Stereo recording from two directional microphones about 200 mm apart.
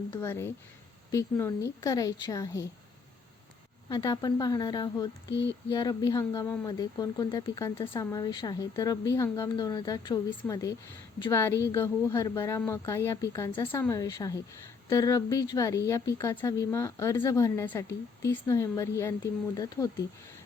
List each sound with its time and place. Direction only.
0.1 s speech: 15° left (ahead or behind)
3.8 s speech: 20° left (ahead or behind)
5.3 s a sound: 60° left (ahead or behind)
5.6 s speech: 20° left (ahead or behind)